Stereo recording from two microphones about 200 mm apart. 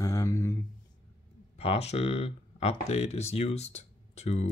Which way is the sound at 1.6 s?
30° left (ahead or behind).